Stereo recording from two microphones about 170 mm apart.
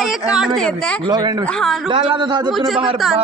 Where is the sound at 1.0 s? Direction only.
25° right (ahead or behind).